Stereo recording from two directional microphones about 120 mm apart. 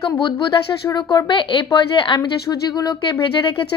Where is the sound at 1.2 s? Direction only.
40° left (ahead or behind).